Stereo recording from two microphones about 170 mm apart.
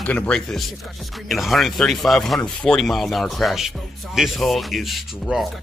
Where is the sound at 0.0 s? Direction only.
10° left (ahead or behind).